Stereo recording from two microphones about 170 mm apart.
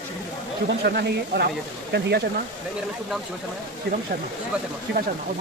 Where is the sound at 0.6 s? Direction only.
75° right (ahead or behind).